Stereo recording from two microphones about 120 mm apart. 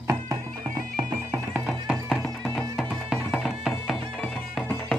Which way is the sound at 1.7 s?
Centre (ahead or behind).